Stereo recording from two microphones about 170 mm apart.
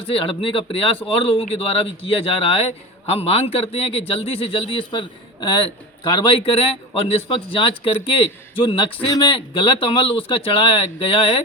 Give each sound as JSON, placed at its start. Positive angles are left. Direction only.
{"t": 0.0, "sound": "speech", "side_deg": 30}